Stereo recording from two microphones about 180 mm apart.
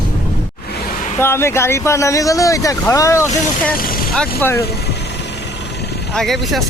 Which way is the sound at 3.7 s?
55° left (ahead or behind).